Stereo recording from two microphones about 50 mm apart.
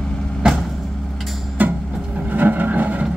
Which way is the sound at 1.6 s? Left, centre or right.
Right.